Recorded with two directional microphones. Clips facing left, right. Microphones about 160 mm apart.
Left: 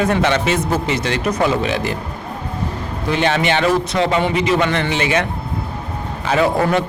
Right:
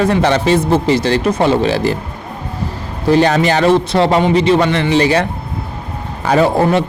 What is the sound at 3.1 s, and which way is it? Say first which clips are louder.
A man's voice: right 6 dB; 35° right (ahead or behind).